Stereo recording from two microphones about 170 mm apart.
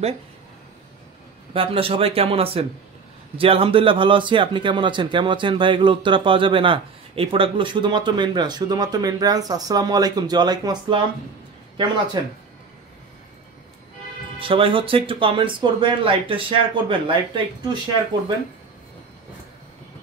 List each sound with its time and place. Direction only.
1.5 s speech: 35° right (ahead or behind)
14.4 s speech: 30° right (ahead or behind)